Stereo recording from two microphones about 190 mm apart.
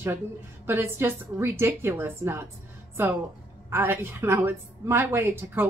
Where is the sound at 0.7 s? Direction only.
10° right (ahead or behind).